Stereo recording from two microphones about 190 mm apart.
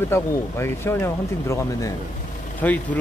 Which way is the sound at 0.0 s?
15° left (ahead or behind).